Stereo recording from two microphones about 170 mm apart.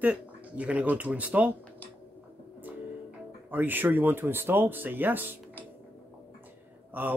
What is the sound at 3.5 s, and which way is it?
Speech, 10° right (ahead or behind).